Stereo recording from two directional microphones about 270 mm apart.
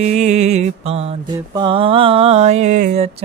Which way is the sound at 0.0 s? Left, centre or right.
Right.